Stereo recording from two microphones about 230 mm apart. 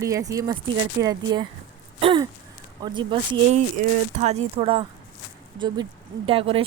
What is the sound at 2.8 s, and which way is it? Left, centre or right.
Speech, centre.